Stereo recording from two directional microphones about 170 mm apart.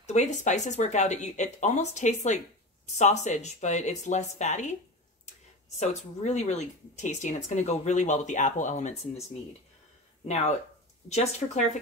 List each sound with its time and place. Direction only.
0.0 s speech: 45° left (ahead or behind)
5.8 s speech: 40° left (ahead or behind)